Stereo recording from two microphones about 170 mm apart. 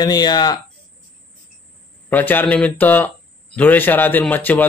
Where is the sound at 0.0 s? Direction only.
25° left (ahead or behind).